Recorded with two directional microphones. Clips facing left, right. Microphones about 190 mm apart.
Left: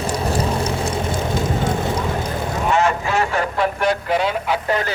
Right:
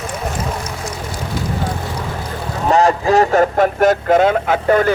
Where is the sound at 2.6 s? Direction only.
35° right (ahead or behind).